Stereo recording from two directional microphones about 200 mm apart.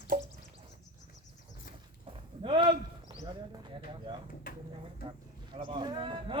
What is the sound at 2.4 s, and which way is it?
Clip-clop, 25° right (ahead or behind).